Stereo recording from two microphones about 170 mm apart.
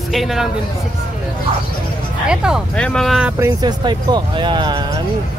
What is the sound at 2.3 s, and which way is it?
Speech, 5° right (ahead or behind).